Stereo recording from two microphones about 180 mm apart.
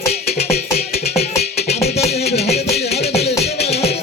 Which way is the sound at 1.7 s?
35° left (ahead or behind).